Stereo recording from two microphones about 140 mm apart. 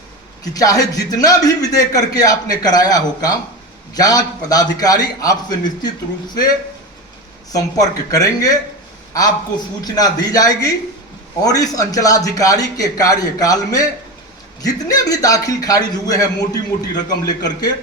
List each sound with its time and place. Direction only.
0.4 s a man's voice: 25° left (ahead or behind)
7.5 s a man's voice: 25° left (ahead or behind)
9.8 s a man's voice: 30° left (ahead or behind)